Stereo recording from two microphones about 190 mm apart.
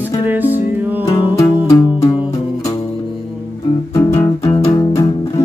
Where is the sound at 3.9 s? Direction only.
15° left (ahead or behind).